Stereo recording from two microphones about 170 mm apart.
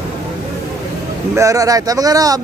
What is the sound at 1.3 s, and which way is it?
Speech, 20° right (ahead or behind).